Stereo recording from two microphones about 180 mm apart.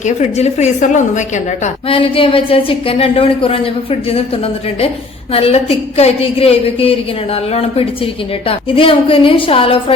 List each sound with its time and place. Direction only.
0.0 s speech: 40° left (ahead or behind)
1.6 s speech: 30° left (ahead or behind)
5.3 s speech: 30° left (ahead or behind)